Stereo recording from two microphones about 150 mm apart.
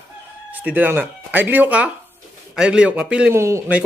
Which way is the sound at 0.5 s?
10° right (ahead or behind).